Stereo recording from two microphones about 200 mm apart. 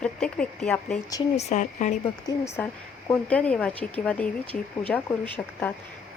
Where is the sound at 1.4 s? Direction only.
35° left (ahead or behind).